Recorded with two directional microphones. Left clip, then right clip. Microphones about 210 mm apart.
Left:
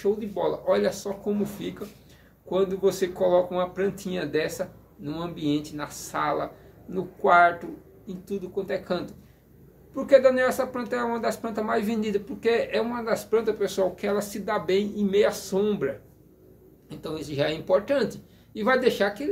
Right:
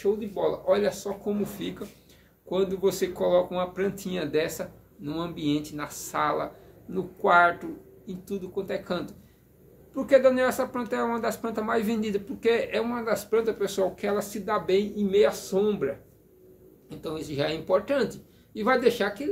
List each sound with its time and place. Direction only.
0.0 s speech: 5° left (ahead or behind)
1.4 s speech: 10° right (ahead or behind); by 15.9 s 5° left (ahead or behind)
16.9 s speech: centre (ahead or behind)